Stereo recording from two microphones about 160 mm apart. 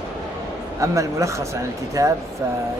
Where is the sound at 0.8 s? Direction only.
20° right (ahead or behind).